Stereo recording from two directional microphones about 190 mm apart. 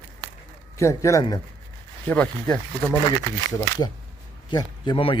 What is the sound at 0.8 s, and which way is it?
Speech, 15° left (ahead or behind).